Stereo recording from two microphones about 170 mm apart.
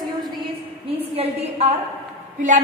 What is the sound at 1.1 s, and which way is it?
Speech, 35° right (ahead or behind).